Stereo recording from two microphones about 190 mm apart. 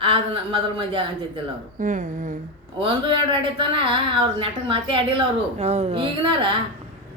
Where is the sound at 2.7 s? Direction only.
25° right (ahead or behind).